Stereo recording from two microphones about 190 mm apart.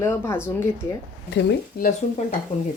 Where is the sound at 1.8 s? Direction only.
45° left (ahead or behind).